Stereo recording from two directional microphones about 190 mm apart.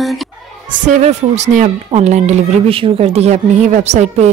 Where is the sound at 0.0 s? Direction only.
Centre (ahead or behind).